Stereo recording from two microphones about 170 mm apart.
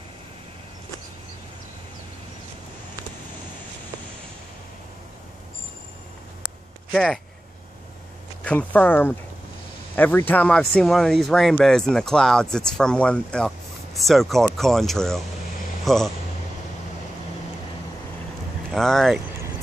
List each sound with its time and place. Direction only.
6.9 s speech: 5° left (ahead or behind)
8.5 s speech: 10° left (ahead or behind)
18.7 s speech: 5° left (ahead or behind)